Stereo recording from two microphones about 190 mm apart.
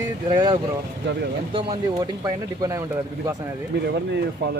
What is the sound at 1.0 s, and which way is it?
Speech, 65° right (ahead or behind).